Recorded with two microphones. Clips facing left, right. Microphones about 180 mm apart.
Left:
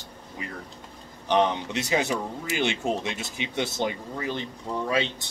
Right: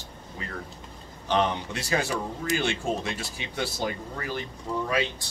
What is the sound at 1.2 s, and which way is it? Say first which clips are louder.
Speech: left 2 dB; 20° left (ahead or behind).